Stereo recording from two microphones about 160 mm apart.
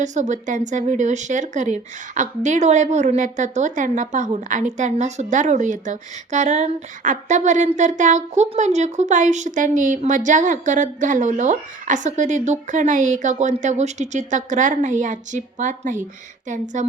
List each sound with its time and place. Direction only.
0.0 s speech: 50° right (ahead or behind)